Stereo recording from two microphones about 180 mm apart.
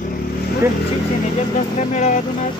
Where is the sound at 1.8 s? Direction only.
40° left (ahead or behind).